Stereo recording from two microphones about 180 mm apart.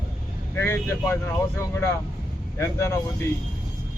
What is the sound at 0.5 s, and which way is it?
Speech, 15° left (ahead or behind).